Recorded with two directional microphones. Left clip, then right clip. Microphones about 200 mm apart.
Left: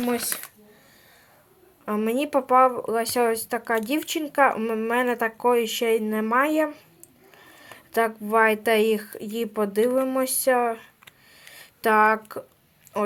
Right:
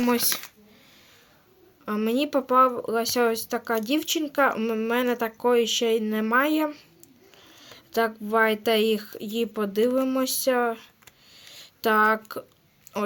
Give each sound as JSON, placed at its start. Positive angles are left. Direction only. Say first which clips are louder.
{"t": 0.0, "sound": "speech", "louder": "right 2 dB", "side_deg": -20}
{"t": 1.8, "sound": "speech", "louder": "left 1 dB", "side_deg": -10}
{"t": 11.4, "sound": "a sound", "louder": "left 2 dB", "side_deg": -10}